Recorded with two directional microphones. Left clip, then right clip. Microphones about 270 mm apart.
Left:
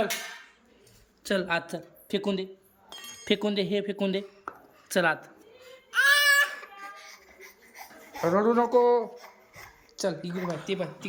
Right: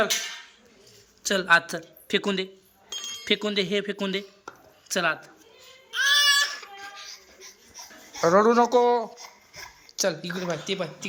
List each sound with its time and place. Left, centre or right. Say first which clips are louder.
1.2 s speech: right 7 dB; centre
5.9 s baby cry: even; left
8.2 s speech: right 5 dB; centre